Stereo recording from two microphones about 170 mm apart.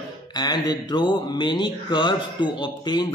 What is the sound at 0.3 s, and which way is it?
Mantra, 25° left (ahead or behind).